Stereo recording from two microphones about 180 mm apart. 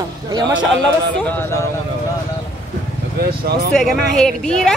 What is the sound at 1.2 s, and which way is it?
Speech, 10° left (ahead or behind).